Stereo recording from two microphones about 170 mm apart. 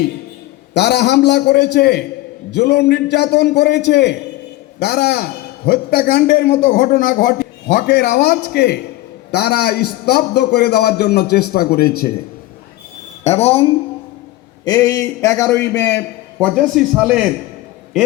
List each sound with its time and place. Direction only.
0.7 s a man's voice: 75° left (ahead or behind)
4.8 s a man's voice: 70° left (ahead or behind)
7.9 s a man's voice: 80° left
13.2 s a woman's voice: 40° left (ahead or behind)
14.6 s a man's voice: 20° left (ahead or behind); by 17.3 s 5° right (ahead or behind)